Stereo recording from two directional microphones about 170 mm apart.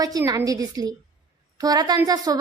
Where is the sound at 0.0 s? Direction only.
20° right (ahead or behind).